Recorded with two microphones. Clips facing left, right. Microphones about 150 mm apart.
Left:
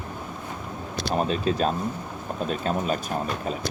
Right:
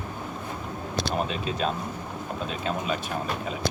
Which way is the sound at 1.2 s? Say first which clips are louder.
Left 4 dB; 40° left (ahead or behind).